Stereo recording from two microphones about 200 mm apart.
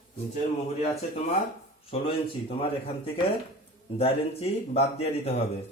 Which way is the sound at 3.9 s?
30° left (ahead or behind).